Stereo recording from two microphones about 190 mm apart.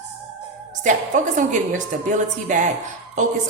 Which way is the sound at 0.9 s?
40° right (ahead or behind).